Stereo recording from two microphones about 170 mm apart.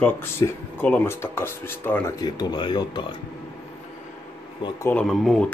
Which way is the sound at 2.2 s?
25° left (ahead or behind).